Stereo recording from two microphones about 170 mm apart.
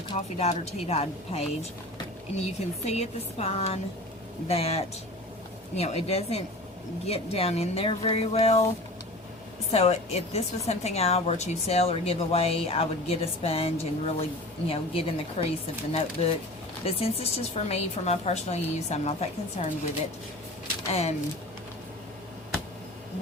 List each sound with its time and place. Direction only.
0.1 s a woman's voice: 40° left (ahead or behind)
9.7 s a woman's voice: 35° left (ahead or behind)
20.9 s a woman's voice: 40° left (ahead or behind)